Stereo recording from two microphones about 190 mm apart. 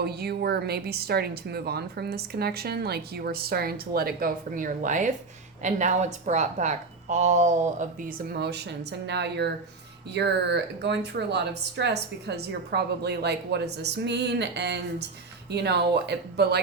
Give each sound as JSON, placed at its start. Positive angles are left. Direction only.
{"t": 0.0, "sound": "a woman's voice", "side_deg": -55}